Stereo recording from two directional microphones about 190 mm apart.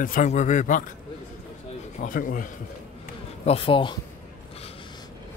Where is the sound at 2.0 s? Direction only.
45° left (ahead or behind).